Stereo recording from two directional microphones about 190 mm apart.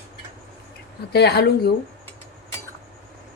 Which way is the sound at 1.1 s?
60° left (ahead or behind).